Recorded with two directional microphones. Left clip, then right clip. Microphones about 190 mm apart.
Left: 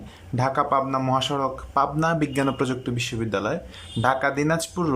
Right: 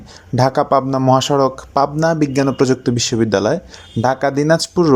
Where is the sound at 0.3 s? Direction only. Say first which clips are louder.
Right 8 dB; 25° right (ahead or behind).